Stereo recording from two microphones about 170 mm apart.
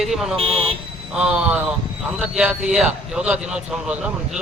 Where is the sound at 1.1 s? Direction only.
5° right (ahead or behind).